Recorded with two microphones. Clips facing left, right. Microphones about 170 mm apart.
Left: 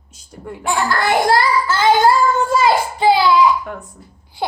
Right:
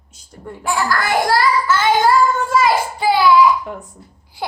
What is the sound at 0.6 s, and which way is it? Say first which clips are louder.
Child singing: left 1 dB; 25° left (ahead or behind).